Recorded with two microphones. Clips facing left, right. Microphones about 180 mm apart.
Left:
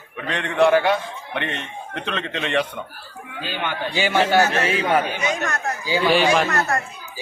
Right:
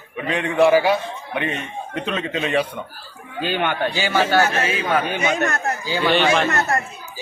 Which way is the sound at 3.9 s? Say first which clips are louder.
Left 1 dB; 15° left (ahead or behind).